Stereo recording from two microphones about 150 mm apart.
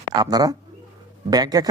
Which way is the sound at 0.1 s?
25° right (ahead or behind).